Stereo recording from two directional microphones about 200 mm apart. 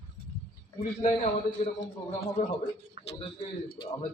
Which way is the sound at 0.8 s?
35° left (ahead or behind).